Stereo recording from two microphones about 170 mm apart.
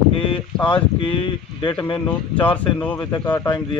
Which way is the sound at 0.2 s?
30° left (ahead or behind).